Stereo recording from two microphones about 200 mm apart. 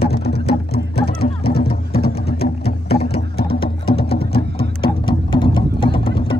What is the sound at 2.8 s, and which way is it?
Music, 50° left (ahead or behind).